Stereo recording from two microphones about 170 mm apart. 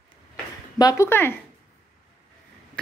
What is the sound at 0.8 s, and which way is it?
Speech, 20° left (ahead or behind).